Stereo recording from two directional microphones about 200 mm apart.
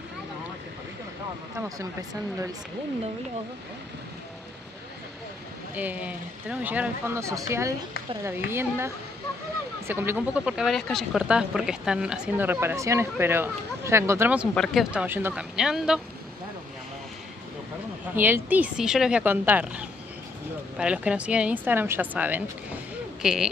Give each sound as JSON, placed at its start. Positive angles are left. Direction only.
{"t": 1.6, "sound": "speech", "side_deg": -15}
{"t": 5.8, "sound": "speech", "side_deg": -5}
{"t": 14.5, "sound": "speech", "side_deg": 0}
{"t": 18.1, "sound": "speech", "side_deg": -10}